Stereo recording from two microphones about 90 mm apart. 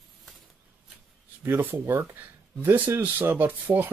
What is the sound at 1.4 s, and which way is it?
Speech, 25° right (ahead or behind).